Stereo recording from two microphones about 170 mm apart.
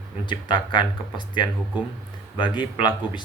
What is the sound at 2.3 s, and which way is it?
Speech, 30° left (ahead or behind).